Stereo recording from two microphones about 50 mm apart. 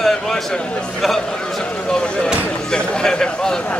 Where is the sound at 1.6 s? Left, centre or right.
Centre.